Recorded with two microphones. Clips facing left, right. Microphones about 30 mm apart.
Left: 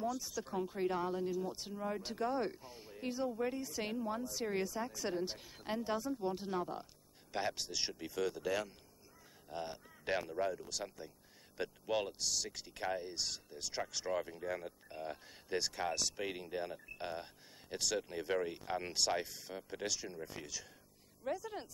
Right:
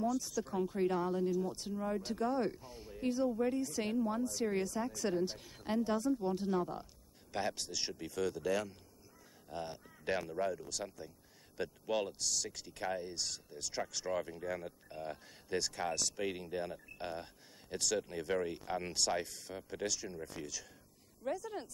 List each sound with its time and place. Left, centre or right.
0.0 s speech: centre